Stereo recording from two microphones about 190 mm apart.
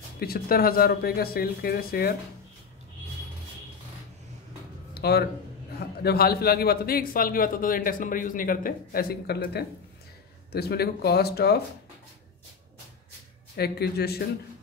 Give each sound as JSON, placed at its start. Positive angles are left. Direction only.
{"t": 0.2, "sound": "a man's voice", "side_deg": 55}
{"t": 4.9, "sound": "a sound", "side_deg": 55}
{"t": 5.8, "sound": "a man's voice", "side_deg": 55}
{"t": 13.6, "sound": "speech", "side_deg": 55}